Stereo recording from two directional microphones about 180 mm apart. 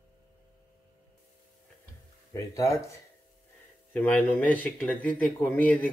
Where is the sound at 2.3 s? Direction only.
20° left (ahead or behind).